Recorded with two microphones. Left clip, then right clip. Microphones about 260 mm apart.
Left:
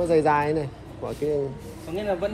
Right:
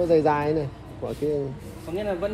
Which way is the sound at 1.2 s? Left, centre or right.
Left.